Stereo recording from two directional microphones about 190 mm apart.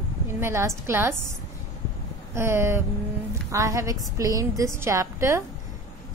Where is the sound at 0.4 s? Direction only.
15° right (ahead or behind).